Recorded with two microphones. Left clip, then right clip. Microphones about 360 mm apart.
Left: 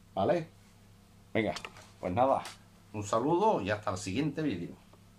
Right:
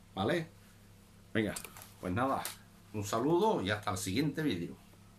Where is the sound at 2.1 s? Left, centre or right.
Centre.